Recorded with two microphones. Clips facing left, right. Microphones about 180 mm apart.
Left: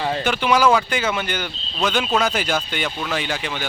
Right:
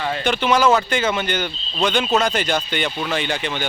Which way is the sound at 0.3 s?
10° left (ahead or behind).